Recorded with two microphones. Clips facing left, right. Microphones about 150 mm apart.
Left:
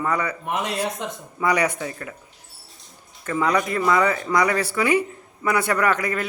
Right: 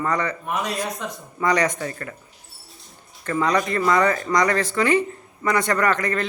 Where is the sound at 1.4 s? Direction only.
10° left (ahead or behind).